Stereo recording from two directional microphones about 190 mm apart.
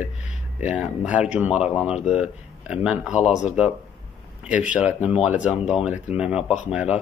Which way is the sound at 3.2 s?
35° left (ahead or behind).